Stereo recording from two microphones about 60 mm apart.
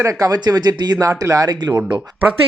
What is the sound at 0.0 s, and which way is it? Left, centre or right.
Speech, right.